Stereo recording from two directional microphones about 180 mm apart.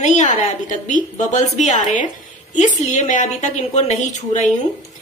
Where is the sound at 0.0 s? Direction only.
40° left (ahead or behind).